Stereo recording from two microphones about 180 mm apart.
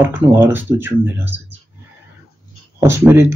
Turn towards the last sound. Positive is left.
turn(degrees=-10)  # may be behind; listen again after turning